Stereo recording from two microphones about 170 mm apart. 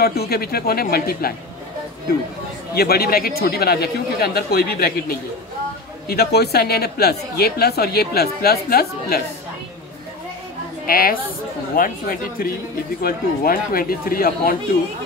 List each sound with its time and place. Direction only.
0.0 s a man's voice: 65° left (ahead or behind)
2.7 s a man's voice: 65° left (ahead or behind)
6.0 s a woman's voice: 70° left (ahead or behind)
10.9 s a man's voice: 60° left (ahead or behind)